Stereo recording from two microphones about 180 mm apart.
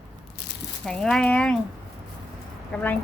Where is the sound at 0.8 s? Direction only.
5° left (ahead or behind).